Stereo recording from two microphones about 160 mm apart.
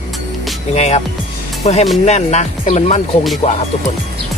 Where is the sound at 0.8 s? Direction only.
40° left (ahead or behind).